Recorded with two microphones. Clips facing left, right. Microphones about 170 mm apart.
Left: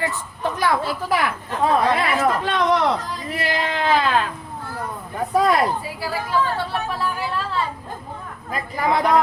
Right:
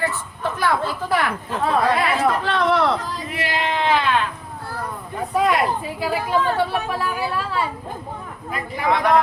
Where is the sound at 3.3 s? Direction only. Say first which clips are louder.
Even; 40° left (ahead or behind).